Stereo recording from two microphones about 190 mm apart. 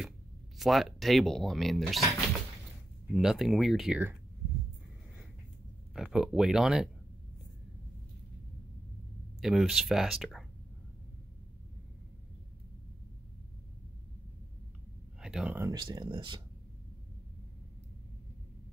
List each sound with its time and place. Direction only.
0.6 s speech: centre (ahead or behind)
3.1 s speech: centre (ahead or behind)
5.9 s speech: 5° right (ahead or behind)
9.4 s speech: centre (ahead or behind)
15.1 s speech: 5° right (ahead or behind)
15.7 s speech: 20° right (ahead or behind)